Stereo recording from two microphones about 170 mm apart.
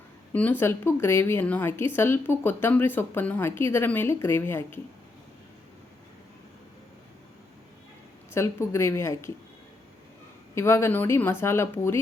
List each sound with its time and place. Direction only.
0.3 s a woman's voice: 10° left (ahead or behind)
8.3 s a woman's voice: 15° left (ahead or behind)
10.5 s a woman's voice: 15° left (ahead or behind)